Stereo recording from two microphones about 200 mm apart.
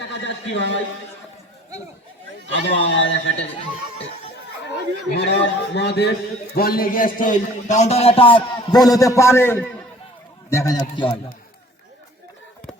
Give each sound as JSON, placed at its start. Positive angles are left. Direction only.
{"t": 0.0, "sound": "a man's voice", "side_deg": 60}
{"t": 2.5, "sound": "a man's voice", "side_deg": 60}
{"t": 4.6, "sound": "a man's voice", "side_deg": 60}